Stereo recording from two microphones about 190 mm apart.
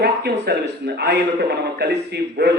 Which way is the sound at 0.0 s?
60° right (ahead or behind).